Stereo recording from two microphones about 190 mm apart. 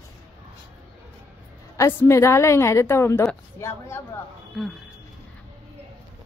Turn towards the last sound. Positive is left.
turn(degrees=0)  # may be behind; listen again after turning